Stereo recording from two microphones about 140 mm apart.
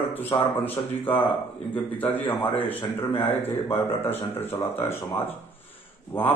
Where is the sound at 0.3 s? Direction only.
40° left (ahead or behind).